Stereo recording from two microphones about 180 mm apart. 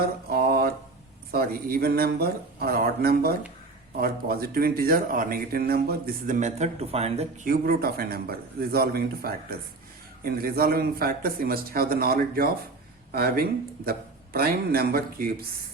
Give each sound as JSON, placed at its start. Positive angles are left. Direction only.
{"t": 0.0, "sound": "mantra", "side_deg": -60}
{"t": 1.3, "sound": "a man's voice", "side_deg": -55}
{"t": 6.2, "sound": "speech", "side_deg": -40}
{"t": 7.4, "sound": "a man's voice", "side_deg": -55}